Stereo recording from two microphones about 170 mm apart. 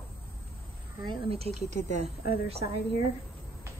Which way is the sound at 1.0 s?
30° right (ahead or behind).